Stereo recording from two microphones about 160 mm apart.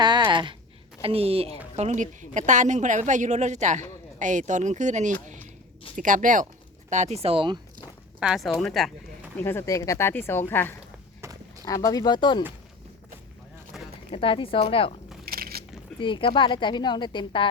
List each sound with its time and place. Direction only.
0.3 s a sound: 30° right (ahead or behind)
1.0 s a woman's voice: 35° right (ahead or behind); by 6.4 s 55° right (ahead or behind)
6.9 s speech: 45° right (ahead or behind)
8.2 s speech: 5° right (ahead or behind)
9.4 s speech: 15° left (ahead or behind)
13.7 s a sound: centre (ahead or behind)
14.1 s a woman's voice: 35° left (ahead or behind)
15.2 s biting: 70° right (ahead or behind)
16.0 s a woman's voice: 30° left (ahead or behind)